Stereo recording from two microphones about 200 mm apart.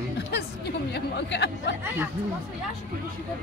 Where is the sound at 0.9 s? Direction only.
60° left (ahead or behind).